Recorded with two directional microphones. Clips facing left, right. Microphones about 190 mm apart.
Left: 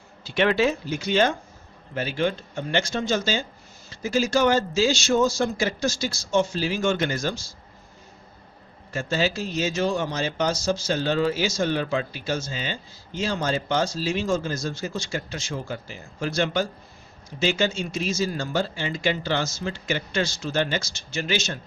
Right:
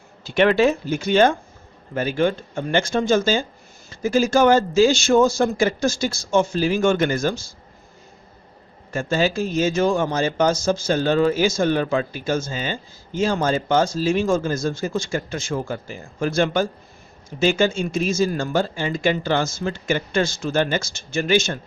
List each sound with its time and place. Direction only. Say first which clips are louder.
0.3 s a man's voice: right 5 dB; 50° right (ahead or behind)
8.9 s a man's voice: right 4 dB; 50° right (ahead or behind)